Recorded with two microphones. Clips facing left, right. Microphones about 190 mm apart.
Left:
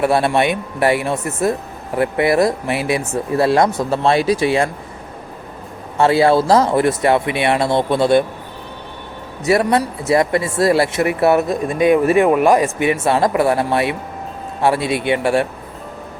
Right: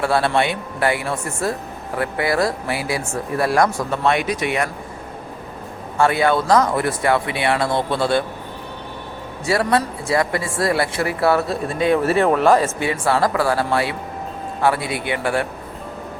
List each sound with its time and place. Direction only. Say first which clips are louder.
0.0 s speech: left 3 dB; 20° left (ahead or behind)
6.0 s speech: left 4 dB; 30° left (ahead or behind)
9.4 s speech: left 4 dB; 20° left (ahead or behind)